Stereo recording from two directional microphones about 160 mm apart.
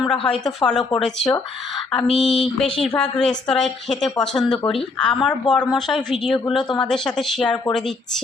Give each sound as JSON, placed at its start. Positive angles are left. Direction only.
{"t": 0.3, "sound": "a woman's voice", "side_deg": 0}
{"t": 4.5, "sound": "speech", "side_deg": 35}
{"t": 5.0, "sound": "a woman's voice", "side_deg": 5}